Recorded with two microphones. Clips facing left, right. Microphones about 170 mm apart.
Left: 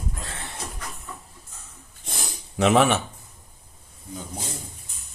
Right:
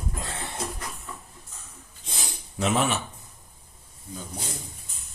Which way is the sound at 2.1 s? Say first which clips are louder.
Left 2 dB; 70° left (ahead or behind).